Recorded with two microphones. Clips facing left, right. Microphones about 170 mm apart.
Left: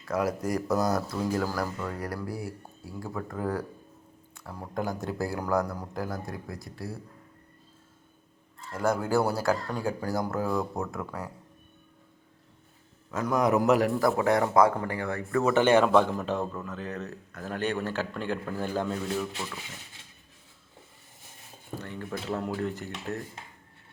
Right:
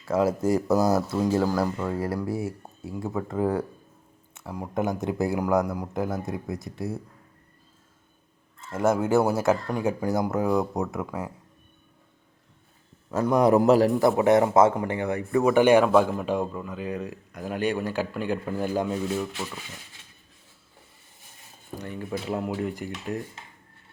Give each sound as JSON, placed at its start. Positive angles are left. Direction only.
{"t": 0.0, "sound": "speech", "side_deg": -25}
{"t": 8.6, "sound": "speech", "side_deg": -25}
{"t": 13.1, "sound": "a man's voice", "side_deg": -30}
{"t": 13.9, "sound": "speech", "side_deg": -20}
{"t": 21.8, "sound": "speech", "side_deg": -15}